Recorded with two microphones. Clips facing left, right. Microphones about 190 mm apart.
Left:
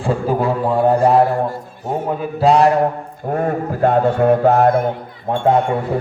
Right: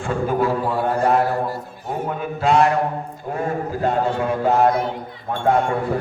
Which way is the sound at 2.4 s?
35° left (ahead or behind).